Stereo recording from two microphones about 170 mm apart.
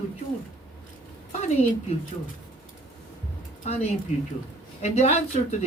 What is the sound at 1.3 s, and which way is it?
Speech, 40° left (ahead or behind).